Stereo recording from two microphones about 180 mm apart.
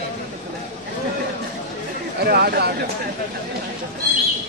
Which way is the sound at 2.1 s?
60° right (ahead or behind).